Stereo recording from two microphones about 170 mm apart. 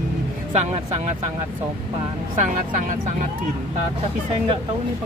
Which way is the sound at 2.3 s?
45° right (ahead or behind).